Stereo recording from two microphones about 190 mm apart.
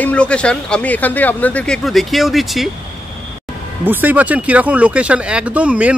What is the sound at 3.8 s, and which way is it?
Speech, 10° right (ahead or behind).